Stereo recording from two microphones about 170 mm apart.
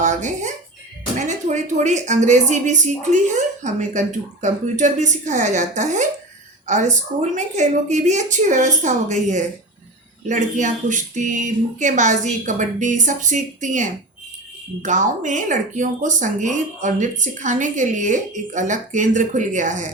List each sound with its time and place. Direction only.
0.0 s speech: 45° right (ahead or behind)